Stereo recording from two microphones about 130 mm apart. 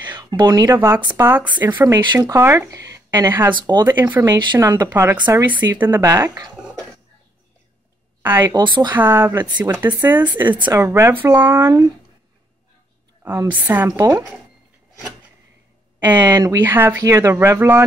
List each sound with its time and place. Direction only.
0.2 s speech: 30° right (ahead or behind)
3.5 s speech: 35° right (ahead or behind)
4.6 s speech: 20° right (ahead or behind)
8.2 s speech: 15° right (ahead or behind)
8.5 s speech: 35° right (ahead or behind)
8.9 s speech: 15° right (ahead or behind)
13.2 s a woman's voice: 20° right (ahead or behind)
13.8 s speech: 25° right (ahead or behind)
16.0 s speech: 35° right (ahead or behind)
16.6 s speech: 15° right (ahead or behind)